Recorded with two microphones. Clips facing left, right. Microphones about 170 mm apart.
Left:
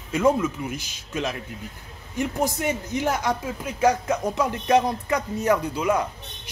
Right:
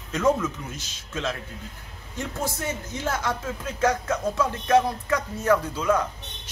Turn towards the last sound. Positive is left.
turn(degrees=15)  # may be behind; listen again after turning